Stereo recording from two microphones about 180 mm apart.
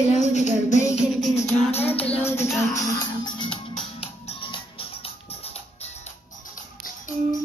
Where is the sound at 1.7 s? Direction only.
35° left (ahead or behind).